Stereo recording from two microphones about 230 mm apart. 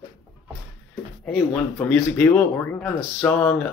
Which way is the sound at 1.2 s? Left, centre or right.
Centre.